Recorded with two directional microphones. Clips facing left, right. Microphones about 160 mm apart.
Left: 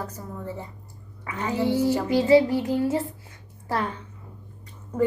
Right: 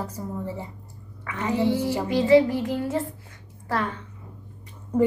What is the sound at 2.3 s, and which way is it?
Child singing, 25° left (ahead or behind).